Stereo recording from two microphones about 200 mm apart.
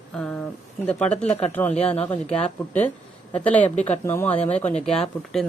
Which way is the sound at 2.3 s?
30° left (ahead or behind).